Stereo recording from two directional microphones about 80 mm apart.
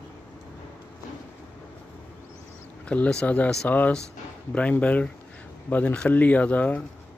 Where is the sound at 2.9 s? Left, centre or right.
Centre.